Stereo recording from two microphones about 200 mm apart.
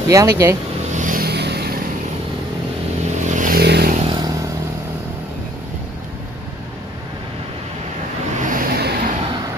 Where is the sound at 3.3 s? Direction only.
45° right (ahead or behind).